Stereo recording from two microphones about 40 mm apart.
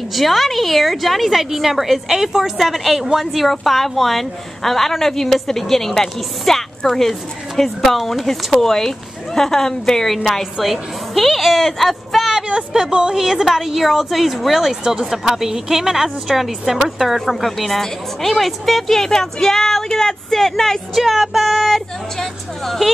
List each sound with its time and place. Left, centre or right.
0.1 s a woman's voice: centre
12.4 s a woman's voice: right; by 21.0 s centre
21.0 s speech: centre